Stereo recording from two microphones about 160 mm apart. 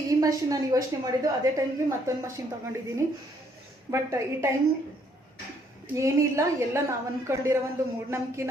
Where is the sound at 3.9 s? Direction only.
15° right (ahead or behind).